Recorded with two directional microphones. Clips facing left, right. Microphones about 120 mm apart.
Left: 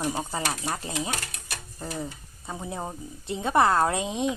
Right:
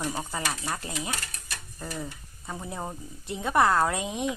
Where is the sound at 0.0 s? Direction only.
15° left (ahead or behind).